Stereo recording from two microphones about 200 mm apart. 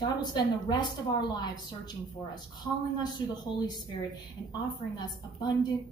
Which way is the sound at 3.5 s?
20° left (ahead or behind).